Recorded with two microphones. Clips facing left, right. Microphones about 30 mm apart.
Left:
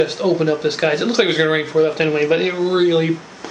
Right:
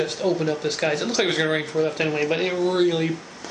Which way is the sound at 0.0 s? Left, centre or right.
Left.